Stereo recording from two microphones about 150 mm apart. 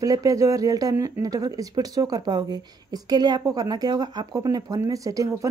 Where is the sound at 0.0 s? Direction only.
20° right (ahead or behind).